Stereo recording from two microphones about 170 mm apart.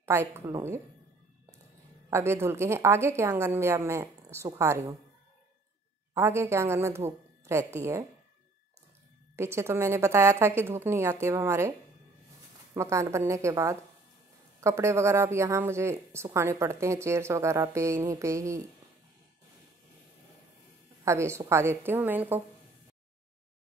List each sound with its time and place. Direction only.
0.0 s speech: 15° right (ahead or behind)
2.0 s speech: 15° right (ahead or behind)
6.1 s speech: 15° right (ahead or behind)
9.4 s speech: 15° right (ahead or behind)
12.7 s speech: 15° right (ahead or behind)
21.0 s speech: 15° right (ahead or behind)